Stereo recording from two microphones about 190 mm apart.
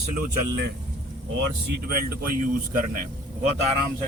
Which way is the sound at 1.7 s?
60° right (ahead or behind).